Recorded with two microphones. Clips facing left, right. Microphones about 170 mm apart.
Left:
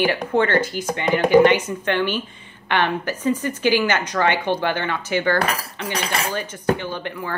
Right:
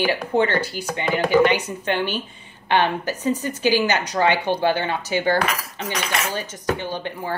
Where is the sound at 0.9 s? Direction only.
15° left (ahead or behind).